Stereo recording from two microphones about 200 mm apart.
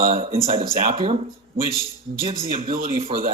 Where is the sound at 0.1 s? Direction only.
30° right (ahead or behind).